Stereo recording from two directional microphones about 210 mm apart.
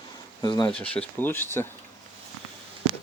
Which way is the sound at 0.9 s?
10° left (ahead or behind).